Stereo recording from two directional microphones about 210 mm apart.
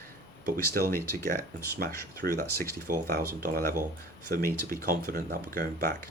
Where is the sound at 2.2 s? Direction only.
50° right (ahead or behind).